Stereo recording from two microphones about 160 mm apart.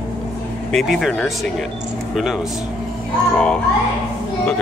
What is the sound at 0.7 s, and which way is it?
A child's voice, centre (ahead or behind).